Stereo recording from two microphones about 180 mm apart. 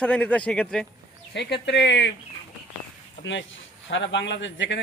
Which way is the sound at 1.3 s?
70° left (ahead or behind).